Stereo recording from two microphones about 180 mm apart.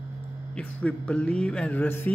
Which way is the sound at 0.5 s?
5° left (ahead or behind).